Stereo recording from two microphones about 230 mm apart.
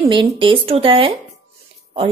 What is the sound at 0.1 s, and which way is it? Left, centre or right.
A woman's voice, right.